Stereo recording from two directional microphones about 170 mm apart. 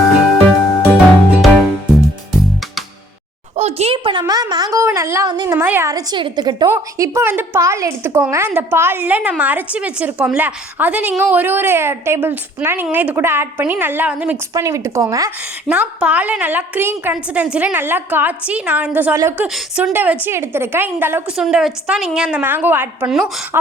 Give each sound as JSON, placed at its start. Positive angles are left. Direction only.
{"t": 0.9, "sound": "music", "side_deg": 0}
{"t": 3.5, "sound": "a sound", "side_deg": -40}
{"t": 6.7, "sound": "a woman's voice", "side_deg": -20}
{"t": 14.5, "sound": "a woman's voice", "side_deg": -20}
{"t": 21.3, "sound": "a woman's voice", "side_deg": 0}